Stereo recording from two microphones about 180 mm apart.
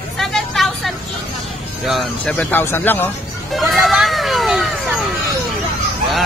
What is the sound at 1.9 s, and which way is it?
Speech, 5° left (ahead or behind).